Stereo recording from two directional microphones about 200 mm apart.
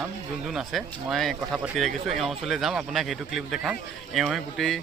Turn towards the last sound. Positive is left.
turn(degrees=0)  # may be behind; listen again after turning